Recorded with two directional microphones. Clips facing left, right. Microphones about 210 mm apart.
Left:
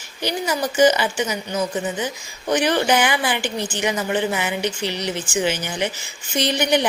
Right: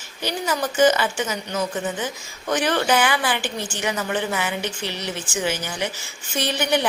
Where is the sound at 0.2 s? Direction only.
15° left (ahead or behind).